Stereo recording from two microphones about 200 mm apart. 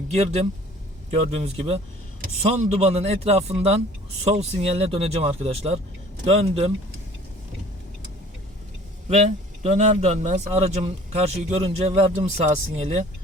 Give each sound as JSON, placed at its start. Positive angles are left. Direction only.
{"t": 0.1, "sound": "a man's voice", "side_deg": -30}
{"t": 9.0, "sound": "a man's voice", "side_deg": -35}